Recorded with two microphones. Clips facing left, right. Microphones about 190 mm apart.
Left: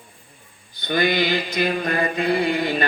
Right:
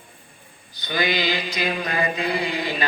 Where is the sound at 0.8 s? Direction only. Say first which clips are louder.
Left 4 dB; 50° left (ahead or behind).